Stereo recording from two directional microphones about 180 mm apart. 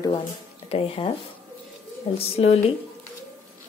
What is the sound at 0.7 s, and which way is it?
Speech, 30° left (ahead or behind).